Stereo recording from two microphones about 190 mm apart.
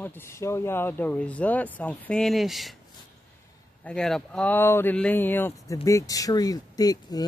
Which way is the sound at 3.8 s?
5° left (ahead or behind).